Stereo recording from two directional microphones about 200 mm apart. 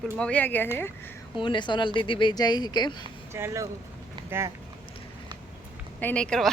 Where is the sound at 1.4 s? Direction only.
25° left (ahead or behind).